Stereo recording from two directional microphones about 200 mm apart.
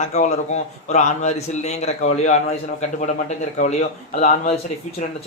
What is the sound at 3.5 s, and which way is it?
Speech, 35° left (ahead or behind).